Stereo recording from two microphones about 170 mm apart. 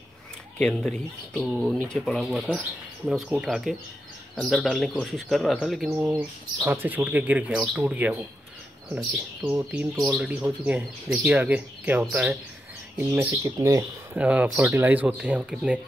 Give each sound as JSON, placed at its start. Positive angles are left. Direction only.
{"t": 0.6, "sound": "speech", "side_deg": 5}
{"t": 13.4, "sound": "speech", "side_deg": -20}
{"t": 14.1, "sound": "speech", "side_deg": -10}